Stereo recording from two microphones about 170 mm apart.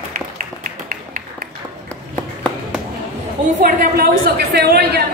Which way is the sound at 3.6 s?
60° right (ahead or behind).